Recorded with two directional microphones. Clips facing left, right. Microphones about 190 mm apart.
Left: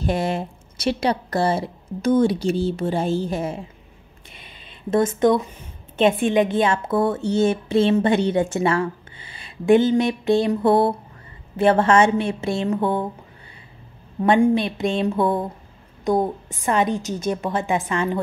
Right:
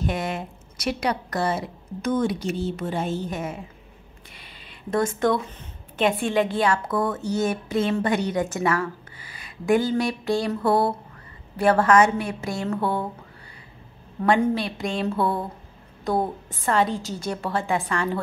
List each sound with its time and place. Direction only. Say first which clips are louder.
0.0 s a woman's voice: left 4 dB; 30° left (ahead or behind)
4.3 s a sound: left 3 dB; 20° left (ahead or behind)
5.9 s a woman's voice: left 4 dB; 20° left (ahead or behind)
14.4 s a woman's voice: left 6 dB; 20° left (ahead or behind)